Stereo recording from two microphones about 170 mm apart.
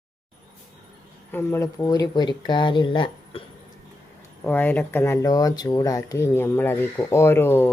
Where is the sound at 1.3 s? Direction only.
10° left (ahead or behind); by 3.4 s 30° left (ahead or behind).